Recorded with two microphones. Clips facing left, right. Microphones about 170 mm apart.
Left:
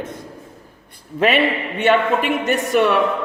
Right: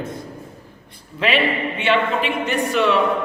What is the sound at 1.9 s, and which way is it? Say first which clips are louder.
Speech: left 3 dB; 45° left (ahead or behind).